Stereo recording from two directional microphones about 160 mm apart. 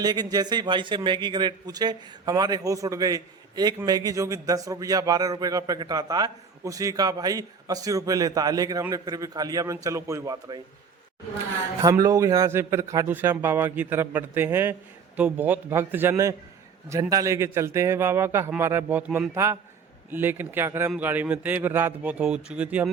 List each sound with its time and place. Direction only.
0.0 s a man's voice: 25° right (ahead or behind)
11.8 s a man's voice: 20° right (ahead or behind)